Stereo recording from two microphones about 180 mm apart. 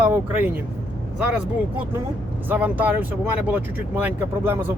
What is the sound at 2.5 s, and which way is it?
Speech, 10° right (ahead or behind).